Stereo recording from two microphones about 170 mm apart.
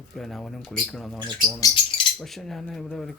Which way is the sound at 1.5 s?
25° left (ahead or behind).